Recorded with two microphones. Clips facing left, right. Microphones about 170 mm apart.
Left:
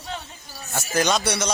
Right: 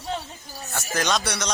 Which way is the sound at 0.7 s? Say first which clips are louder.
Left 3 dB; 5° left (ahead or behind).